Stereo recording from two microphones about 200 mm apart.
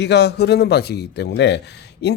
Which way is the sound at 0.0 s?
55° left (ahead or behind).